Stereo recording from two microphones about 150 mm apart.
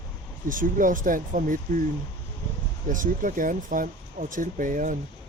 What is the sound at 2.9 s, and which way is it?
Speech, 65° right (ahead or behind).